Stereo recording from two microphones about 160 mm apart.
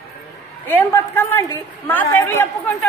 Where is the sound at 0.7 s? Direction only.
15° left (ahead or behind).